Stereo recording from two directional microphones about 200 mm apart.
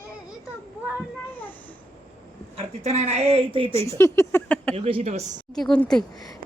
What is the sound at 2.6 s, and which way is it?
Speech, 35° right (ahead or behind).